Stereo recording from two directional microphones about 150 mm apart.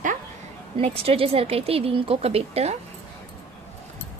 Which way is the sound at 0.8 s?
40° right (ahead or behind).